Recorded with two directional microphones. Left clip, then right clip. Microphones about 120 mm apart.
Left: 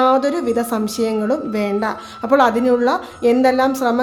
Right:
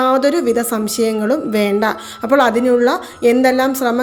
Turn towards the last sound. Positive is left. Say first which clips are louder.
# right 1 dB
turn(degrees=-25)  # may be behind; listen again after turning